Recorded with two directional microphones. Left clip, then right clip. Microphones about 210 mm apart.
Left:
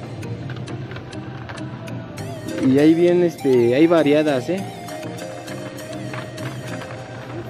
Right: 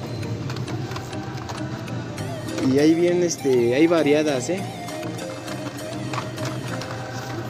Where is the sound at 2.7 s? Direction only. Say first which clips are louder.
Left 3 dB; 30° left (ahead or behind).